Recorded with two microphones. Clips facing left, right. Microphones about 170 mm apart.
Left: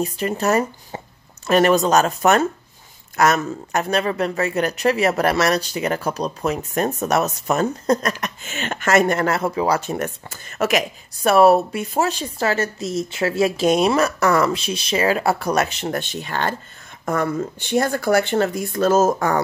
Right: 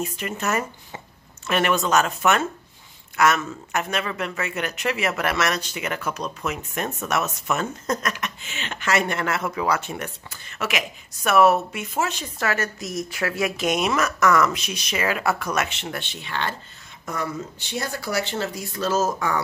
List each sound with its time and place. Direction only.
0.0 s speech: 35° left (ahead or behind)